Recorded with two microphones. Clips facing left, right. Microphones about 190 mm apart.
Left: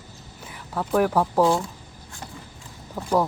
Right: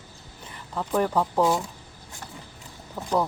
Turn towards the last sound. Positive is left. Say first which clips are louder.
# left 2 dB
turn(degrees=10)  # may be behind; listen again after turning